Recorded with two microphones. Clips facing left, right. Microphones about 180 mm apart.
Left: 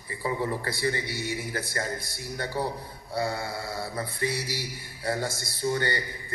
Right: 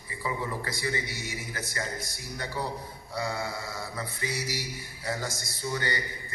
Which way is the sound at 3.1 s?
30° left (ahead or behind).